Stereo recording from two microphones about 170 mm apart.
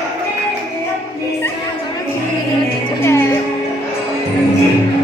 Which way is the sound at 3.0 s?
15° left (ahead or behind).